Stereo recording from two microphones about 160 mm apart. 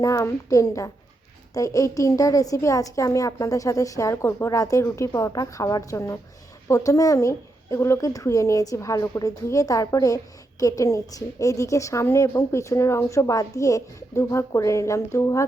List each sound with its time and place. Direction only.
0.0 s a woman's voice: 20° left (ahead or behind)